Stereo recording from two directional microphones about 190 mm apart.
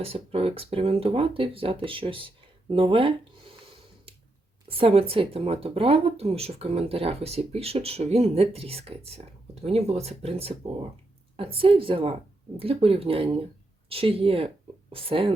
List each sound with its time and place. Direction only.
0.0 s speech: 30° right (ahead or behind)